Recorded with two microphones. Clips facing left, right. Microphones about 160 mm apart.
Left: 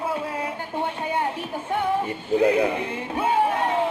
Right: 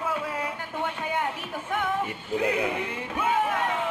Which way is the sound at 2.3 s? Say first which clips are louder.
Left 7 dB; 30° left (ahead or behind).